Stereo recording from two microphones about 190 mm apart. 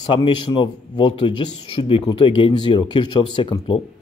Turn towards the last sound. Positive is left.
turn(degrees=25)  # may be behind; listen again after turning